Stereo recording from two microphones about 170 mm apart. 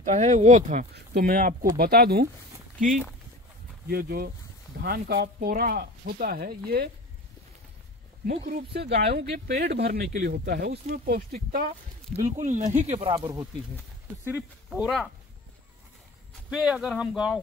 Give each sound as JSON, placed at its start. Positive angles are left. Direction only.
{"t": 0.0, "sound": "speech", "side_deg": -45}
{"t": 0.9, "sound": "speech", "side_deg": -60}
{"t": 2.8, "sound": "speech", "side_deg": 0}
{"t": 3.9, "sound": "speech", "side_deg": -60}
{"t": 8.3, "sound": "speech", "side_deg": -65}
{"t": 12.3, "sound": "speech", "side_deg": -45}
{"t": 14.2, "sound": "speech", "side_deg": -5}
{"t": 16.4, "sound": "speech", "side_deg": -5}